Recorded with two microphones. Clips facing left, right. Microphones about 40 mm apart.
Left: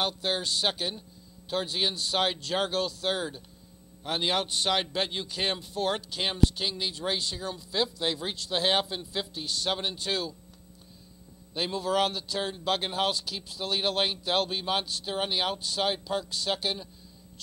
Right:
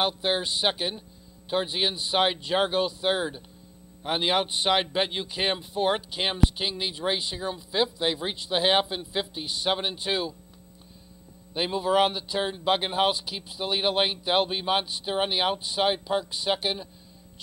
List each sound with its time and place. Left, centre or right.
0.0 s a man's voice: centre
11.5 s a man's voice: centre